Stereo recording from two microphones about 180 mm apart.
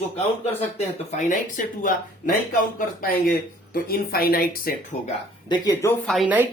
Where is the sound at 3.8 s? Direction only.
55° left (ahead or behind).